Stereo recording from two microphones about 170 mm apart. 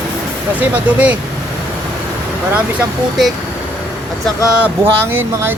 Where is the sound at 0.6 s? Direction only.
10° right (ahead or behind).